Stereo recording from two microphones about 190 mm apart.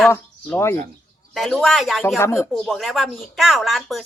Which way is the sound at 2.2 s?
15° left (ahead or behind).